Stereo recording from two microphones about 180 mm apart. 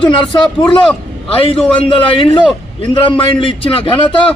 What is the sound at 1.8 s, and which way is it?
A man's voice, 30° left (ahead or behind).